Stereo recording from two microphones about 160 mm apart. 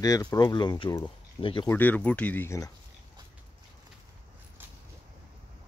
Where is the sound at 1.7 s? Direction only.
10° left (ahead or behind).